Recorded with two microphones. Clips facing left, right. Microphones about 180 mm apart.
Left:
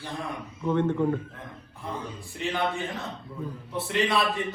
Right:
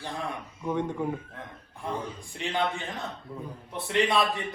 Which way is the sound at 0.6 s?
10° right (ahead or behind).